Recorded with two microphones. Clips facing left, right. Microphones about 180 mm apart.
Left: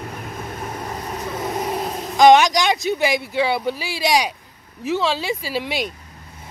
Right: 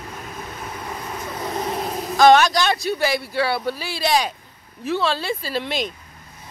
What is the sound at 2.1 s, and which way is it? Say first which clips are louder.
Speech: left 2 dB; 15° left (ahead or behind).